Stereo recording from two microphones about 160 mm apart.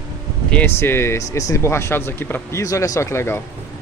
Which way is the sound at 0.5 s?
10° left (ahead or behind).